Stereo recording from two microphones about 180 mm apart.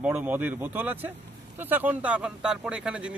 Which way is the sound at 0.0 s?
10° right (ahead or behind).